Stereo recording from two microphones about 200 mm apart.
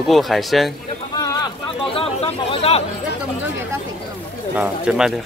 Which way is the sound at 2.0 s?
30° left (ahead or behind).